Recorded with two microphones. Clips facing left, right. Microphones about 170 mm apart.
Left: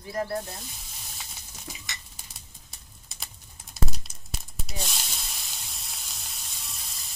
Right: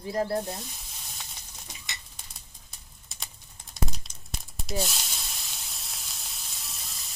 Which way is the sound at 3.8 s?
5° left (ahead or behind).